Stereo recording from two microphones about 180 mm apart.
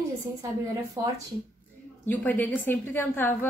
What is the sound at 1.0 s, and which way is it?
Speech, 20° right (ahead or behind).